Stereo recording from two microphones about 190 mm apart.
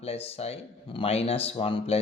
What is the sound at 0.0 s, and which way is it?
Speech, 30° left (ahead or behind).